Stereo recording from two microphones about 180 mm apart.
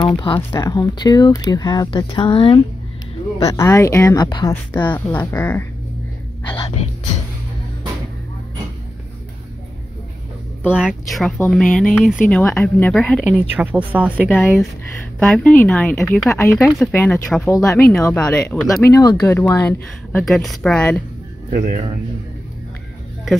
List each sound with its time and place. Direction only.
0.0 s speech: 25° left (ahead or behind)
3.4 s speech: 15° left (ahead or behind)
4.8 s speech: 10° left (ahead or behind)
6.5 s music: 35° left (ahead or behind)
10.7 s speech: 5° right (ahead or behind)
13.7 s speech: 10° right (ahead or behind)
21.5 s speech: 35° right (ahead or behind)